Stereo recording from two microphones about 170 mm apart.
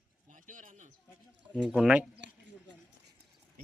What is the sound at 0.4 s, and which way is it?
Speech, 50° right (ahead or behind).